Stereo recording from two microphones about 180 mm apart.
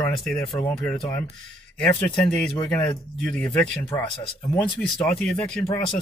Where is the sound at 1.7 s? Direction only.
5° left (ahead or behind).